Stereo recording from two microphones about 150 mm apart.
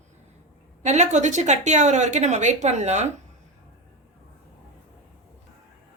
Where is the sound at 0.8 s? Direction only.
50° right (ahead or behind).